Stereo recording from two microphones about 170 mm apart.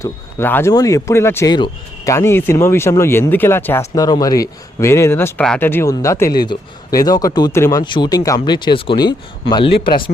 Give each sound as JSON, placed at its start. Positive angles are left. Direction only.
{"t": 0.0, "sound": "speech", "side_deg": 15}